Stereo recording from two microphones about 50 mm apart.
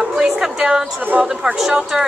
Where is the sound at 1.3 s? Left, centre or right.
Centre.